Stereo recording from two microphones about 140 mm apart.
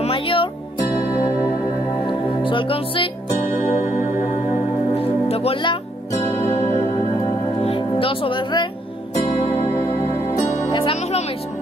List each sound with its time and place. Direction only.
0.0 s music: 40° left (ahead or behind)
4.9 s music: 45° left (ahead or behind)
6.4 s music: 55° left (ahead or behind)
7.6 s music: 40° left (ahead or behind)
10.7 s music: 40° left (ahead or behind)